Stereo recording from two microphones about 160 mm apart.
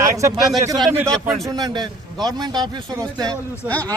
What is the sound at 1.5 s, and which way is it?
Speech, 25° right (ahead or behind).